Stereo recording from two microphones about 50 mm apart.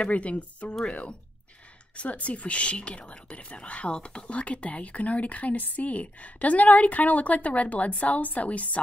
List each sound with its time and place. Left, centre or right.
0.0 s speech: left